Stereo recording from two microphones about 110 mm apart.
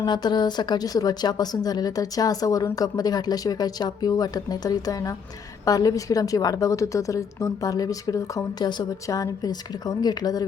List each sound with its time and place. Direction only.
0.0 s speech: 40° left (ahead or behind)